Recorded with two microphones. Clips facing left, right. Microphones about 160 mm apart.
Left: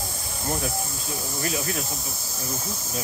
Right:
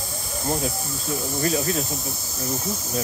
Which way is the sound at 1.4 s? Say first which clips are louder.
Right 5 dB; 35° right (ahead or behind).